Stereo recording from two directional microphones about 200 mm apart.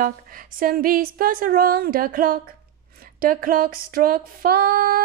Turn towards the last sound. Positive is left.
turn(degrees=-45)  # may be behind; listen again after turning